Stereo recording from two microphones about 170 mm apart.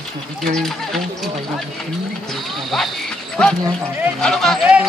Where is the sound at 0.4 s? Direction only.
Centre (ahead or behind).